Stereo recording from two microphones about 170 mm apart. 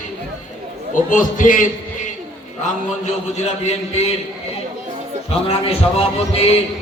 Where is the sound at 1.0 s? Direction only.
50° left (ahead or behind).